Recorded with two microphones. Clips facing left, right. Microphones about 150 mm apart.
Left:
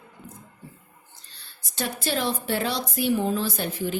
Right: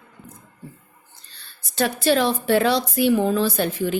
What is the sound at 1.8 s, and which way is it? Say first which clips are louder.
A woman's voice: right 8 dB; 75° right (ahead or behind).